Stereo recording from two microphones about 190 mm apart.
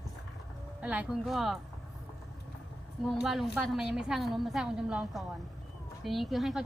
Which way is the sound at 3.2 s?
Centre (ahead or behind).